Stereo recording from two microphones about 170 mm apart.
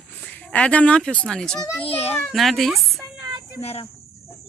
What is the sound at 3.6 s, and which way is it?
Speech, 35° left (ahead or behind).